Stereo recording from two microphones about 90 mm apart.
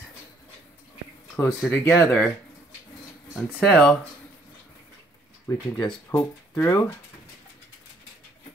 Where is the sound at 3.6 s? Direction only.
Centre (ahead or behind).